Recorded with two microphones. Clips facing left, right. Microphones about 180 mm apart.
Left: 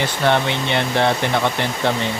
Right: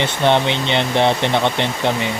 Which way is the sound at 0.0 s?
20° right (ahead or behind).